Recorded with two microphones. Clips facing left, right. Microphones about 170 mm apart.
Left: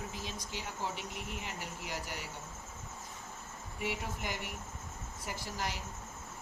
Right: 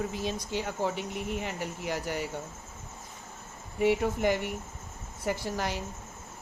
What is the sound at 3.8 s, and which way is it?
Speech, 60° right (ahead or behind).